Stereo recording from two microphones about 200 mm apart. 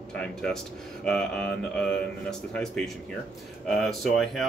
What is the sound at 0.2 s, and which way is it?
Speech, centre (ahead or behind).